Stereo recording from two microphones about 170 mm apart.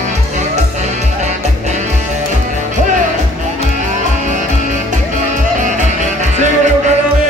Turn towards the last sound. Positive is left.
turn(degrees=-45)  # may be behind; listen again after turning